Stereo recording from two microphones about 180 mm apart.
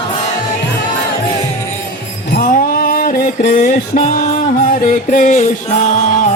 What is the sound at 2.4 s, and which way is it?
Music, 50° left (ahead or behind).